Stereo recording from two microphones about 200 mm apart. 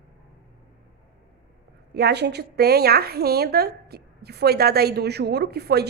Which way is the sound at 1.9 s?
55° right (ahead or behind).